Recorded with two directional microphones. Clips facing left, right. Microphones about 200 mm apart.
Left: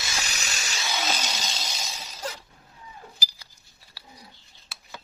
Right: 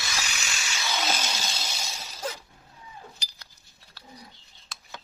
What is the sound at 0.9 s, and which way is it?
Chainsaw, centre (ahead or behind).